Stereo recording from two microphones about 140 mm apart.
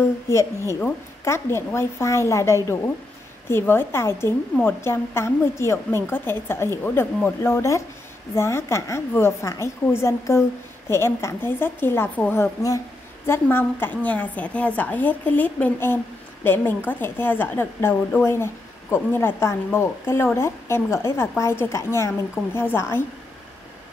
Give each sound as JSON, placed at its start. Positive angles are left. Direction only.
{"t": 0.3, "sound": "a woman's voice", "side_deg": 20}